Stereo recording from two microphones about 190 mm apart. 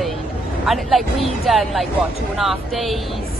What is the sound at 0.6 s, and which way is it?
Speech, centre (ahead or behind).